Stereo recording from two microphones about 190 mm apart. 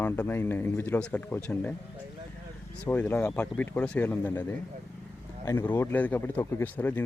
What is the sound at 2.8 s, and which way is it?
Speech, 5° left (ahead or behind).